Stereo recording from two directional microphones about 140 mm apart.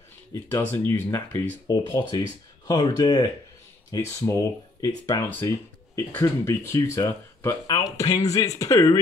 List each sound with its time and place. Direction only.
0.3 s speech: 15° left (ahead or behind)
2.7 s speech: 30° left (ahead or behind)